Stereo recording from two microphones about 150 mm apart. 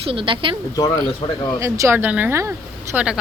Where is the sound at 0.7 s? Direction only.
25° left (ahead or behind).